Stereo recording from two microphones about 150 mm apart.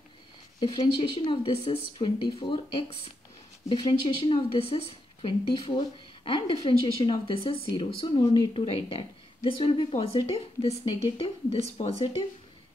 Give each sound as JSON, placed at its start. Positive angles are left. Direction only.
{"t": 0.6, "sound": "a woman's voice", "side_deg": 35}